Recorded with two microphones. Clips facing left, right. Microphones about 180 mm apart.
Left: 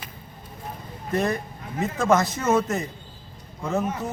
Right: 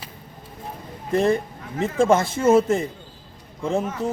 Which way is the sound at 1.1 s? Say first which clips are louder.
Right 5 dB; 25° right (ahead or behind).